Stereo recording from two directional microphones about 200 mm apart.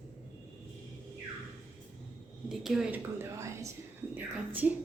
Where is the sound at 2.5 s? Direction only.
Centre (ahead or behind).